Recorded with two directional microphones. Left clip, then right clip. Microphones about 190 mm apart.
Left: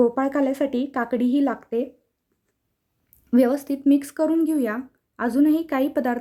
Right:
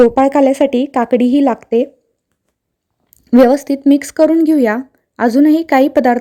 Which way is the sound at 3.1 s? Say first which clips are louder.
Right 11 dB; 25° right (ahead or behind).